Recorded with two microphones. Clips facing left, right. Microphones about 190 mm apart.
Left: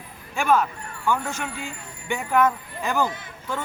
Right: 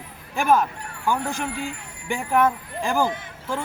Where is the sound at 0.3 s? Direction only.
40° right (ahead or behind).